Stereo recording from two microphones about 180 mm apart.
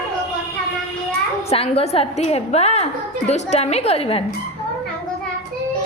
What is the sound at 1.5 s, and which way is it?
Speech, 35° left (ahead or behind).